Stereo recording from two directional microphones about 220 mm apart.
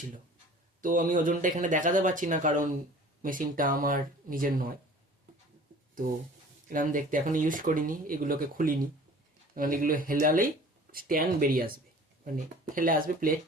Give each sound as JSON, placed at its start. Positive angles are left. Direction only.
{"t": 0.8, "sound": "speech", "side_deg": -35}
{"t": 6.7, "sound": "speech", "side_deg": -35}